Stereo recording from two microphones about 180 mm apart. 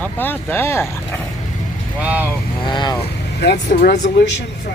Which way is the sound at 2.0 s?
10° right (ahead or behind).